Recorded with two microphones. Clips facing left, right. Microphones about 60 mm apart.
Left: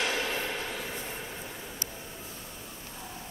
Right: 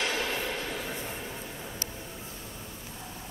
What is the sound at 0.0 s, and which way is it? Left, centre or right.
Music, centre.